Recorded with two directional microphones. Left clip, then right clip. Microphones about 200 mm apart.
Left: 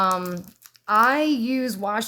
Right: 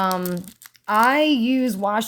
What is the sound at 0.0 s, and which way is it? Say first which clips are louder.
Speech: left 1 dB; 15° right (ahead or behind).